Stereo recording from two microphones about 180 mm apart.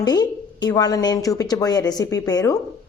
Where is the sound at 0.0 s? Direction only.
20° left (ahead or behind).